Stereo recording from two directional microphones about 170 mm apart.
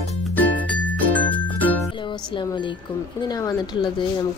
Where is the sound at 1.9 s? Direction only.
30° left (ahead or behind).